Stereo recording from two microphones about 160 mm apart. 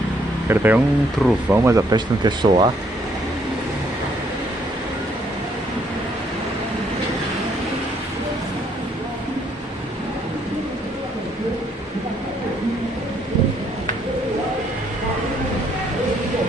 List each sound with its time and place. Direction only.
0.5 s speech: 10° right (ahead or behind); by 2.7 s 30° right (ahead or behind)